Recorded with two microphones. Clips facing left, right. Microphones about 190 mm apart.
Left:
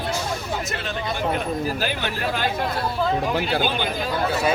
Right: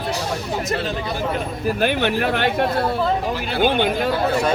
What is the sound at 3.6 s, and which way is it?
Speech, 60° right (ahead or behind).